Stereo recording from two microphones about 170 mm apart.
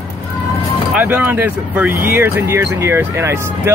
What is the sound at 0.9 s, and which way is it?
Speech, 10° right (ahead or behind).